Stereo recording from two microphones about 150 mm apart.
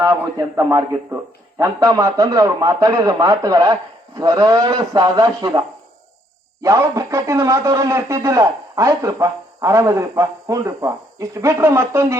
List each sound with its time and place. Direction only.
0.0 s a man's voice: 20° right (ahead or behind)